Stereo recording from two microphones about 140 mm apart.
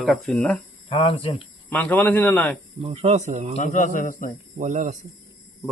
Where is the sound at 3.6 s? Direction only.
60° left (ahead or behind).